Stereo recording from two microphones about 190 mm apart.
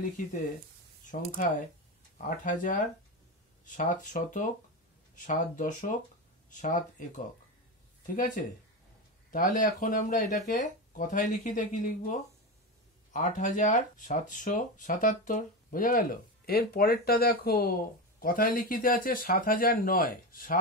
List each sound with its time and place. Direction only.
1.4 s speech: 45° left (ahead or behind)
9.3 s speech: 45° left (ahead or behind)